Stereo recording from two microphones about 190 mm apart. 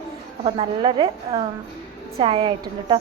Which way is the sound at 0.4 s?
30° right (ahead or behind).